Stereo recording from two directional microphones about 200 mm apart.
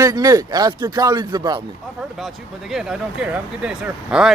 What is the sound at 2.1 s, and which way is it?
Speech, centre (ahead or behind).